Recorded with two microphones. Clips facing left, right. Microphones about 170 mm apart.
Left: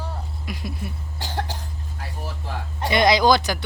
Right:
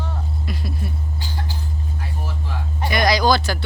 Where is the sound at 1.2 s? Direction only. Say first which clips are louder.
Left 6 dB; 90° left.